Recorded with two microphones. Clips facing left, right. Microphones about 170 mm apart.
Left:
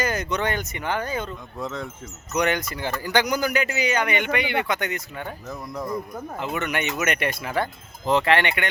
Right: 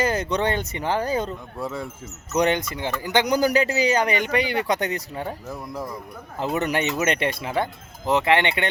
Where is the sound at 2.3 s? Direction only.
30° right (ahead or behind).